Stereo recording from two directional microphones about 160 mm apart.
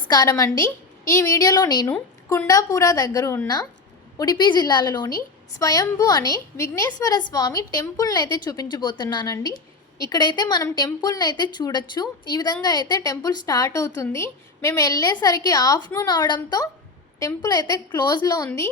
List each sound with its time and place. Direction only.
0.1 s a woman's voice: 20° left (ahead or behind)
1.9 s a woman's voice: 10° left (ahead or behind)
2.5 s a woman's voice: 20° left (ahead or behind)